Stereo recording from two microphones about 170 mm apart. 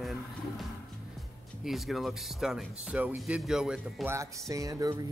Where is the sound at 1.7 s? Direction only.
Centre (ahead or behind).